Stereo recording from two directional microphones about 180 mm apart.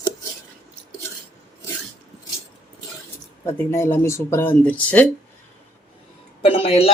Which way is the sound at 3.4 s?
15° left (ahead or behind).